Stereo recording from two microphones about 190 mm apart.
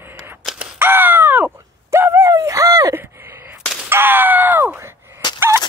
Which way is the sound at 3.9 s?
10° right (ahead or behind).